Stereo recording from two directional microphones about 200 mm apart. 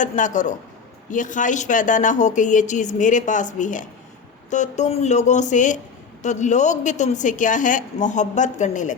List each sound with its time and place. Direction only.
0.0 s a woman's voice: 40° left (ahead or behind)